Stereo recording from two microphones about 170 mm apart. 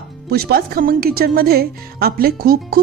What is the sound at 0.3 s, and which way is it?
A woman's voice, 65° right (ahead or behind).